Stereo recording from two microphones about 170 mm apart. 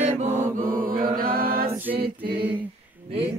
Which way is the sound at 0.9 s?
60° right (ahead or behind).